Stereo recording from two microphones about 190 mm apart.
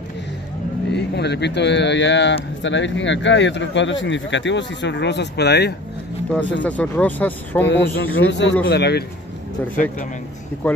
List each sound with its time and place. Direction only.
0.9 s a man's voice: 65° left (ahead or behind)
6.6 s speech: 10° left (ahead or behind)
7.6 s speech: 75° left (ahead or behind)
8.3 s a man's voice: 65° left (ahead or behind)
10.6 s speech: 10° left (ahead or behind)